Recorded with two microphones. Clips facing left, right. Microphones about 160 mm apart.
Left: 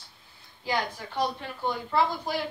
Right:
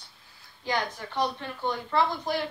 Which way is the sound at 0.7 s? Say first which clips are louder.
Even; 10° left (ahead or behind).